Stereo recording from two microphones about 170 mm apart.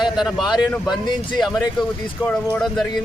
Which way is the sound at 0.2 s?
Centre (ahead or behind).